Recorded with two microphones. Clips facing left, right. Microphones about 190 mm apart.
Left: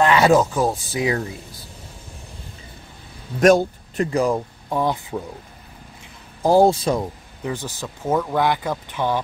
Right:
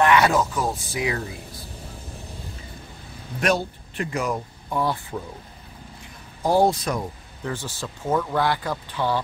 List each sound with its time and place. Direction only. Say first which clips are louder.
0.0 s speech: left 3 dB; 25° left (ahead or behind)
3.3 s speech: left 9 dB; 45° left (ahead or behind); by 5.2 s 20° left (ahead or behind)
6.4 s speech: left 4 dB; 25° left (ahead or behind)
7.4 s speech: left 3 dB; 15° left (ahead or behind)